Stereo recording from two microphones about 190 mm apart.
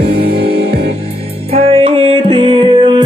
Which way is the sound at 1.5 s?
30° right (ahead or behind).